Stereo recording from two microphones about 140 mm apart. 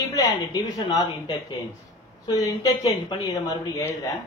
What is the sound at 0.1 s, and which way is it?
Speech, 25° left (ahead or behind).